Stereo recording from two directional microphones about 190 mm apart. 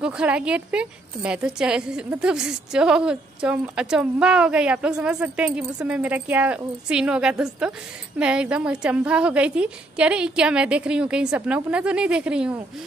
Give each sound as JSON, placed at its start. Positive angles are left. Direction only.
{"t": 0.0, "sound": "a woman's voice", "side_deg": -5}